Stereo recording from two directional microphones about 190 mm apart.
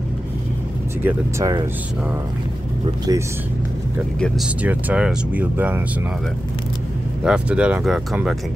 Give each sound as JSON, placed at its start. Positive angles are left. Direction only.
{"t": 1.0, "sound": "speech", "side_deg": -15}
{"t": 3.1, "sound": "speech", "side_deg": -20}
{"t": 4.6, "sound": "speech", "side_deg": -5}
{"t": 7.2, "sound": "speech", "side_deg": -5}